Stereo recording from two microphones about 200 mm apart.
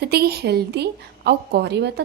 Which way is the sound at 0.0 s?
50° right (ahead or behind).